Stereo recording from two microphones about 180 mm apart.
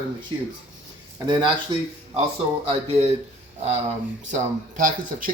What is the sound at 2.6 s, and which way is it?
Speech, 35° right (ahead or behind).